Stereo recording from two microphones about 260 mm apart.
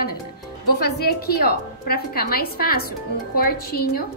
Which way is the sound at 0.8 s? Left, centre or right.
Left.